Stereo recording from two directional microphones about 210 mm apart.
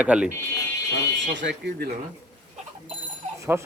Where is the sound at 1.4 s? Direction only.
60° right (ahead or behind).